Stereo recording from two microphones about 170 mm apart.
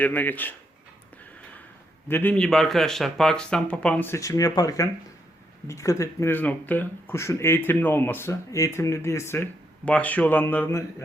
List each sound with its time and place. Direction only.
0.0 s speech: 10° left (ahead or behind)
2.0 s speech: 10° left (ahead or behind)